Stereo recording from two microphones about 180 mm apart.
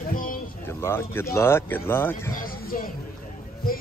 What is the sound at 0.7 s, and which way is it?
Speech, 15° left (ahead or behind).